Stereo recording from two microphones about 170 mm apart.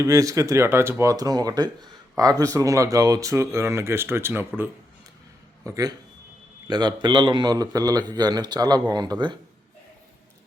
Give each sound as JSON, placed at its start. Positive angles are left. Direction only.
{"t": 0.0, "sound": "speech", "side_deg": -20}